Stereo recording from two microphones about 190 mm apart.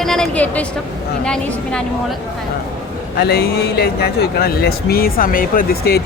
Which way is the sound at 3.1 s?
55° left (ahead or behind).